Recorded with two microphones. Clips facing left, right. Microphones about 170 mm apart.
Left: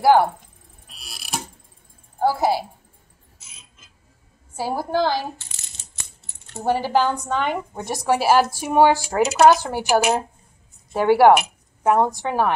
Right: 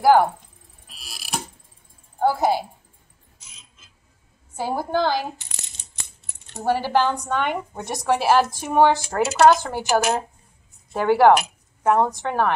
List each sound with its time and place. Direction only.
0.0 s a woman's voice: 5° left (ahead or behind)
0.8 s clock: centre (ahead or behind)
2.1 s a woman's voice: 10° left (ahead or behind)
4.6 s speech: 5° left (ahead or behind)
6.2 s coin: 20° right (ahead or behind)
6.6 s speech: 15° left (ahead or behind)
7.2 s a woman's voice: centre (ahead or behind)